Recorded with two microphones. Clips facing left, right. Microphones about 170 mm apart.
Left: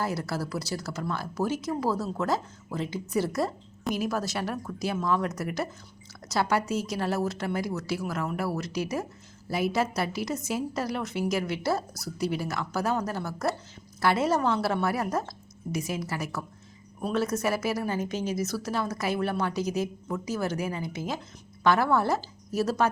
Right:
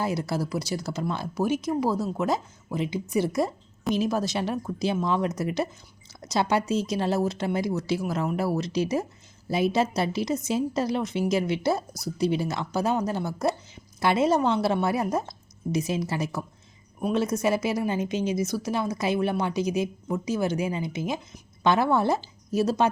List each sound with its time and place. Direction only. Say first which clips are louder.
0.0 s a woman's voice: right 3 dB; 20° right (ahead or behind)